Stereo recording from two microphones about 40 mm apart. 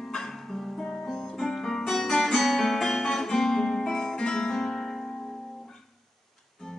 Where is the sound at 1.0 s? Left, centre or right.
Centre.